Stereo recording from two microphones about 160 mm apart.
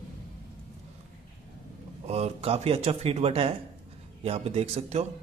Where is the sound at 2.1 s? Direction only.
40° right (ahead or behind).